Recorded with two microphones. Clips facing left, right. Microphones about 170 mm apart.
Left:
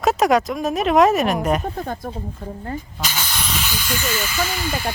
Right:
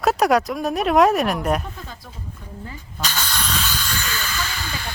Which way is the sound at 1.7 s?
55° left (ahead or behind).